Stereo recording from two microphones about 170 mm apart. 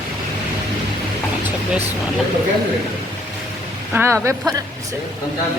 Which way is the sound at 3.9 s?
15° right (ahead or behind).